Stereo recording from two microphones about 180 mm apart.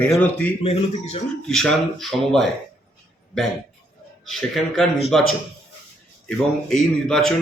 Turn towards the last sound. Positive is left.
turn(degrees=5)  # may be behind; listen again after turning